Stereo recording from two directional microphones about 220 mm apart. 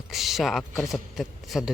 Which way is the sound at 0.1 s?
Centre (ahead or behind).